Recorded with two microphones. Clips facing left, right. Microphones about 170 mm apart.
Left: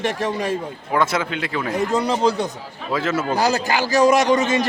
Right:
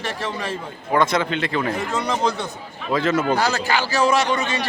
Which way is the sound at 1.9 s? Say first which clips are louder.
Left 5 dB; 35° left (ahead or behind).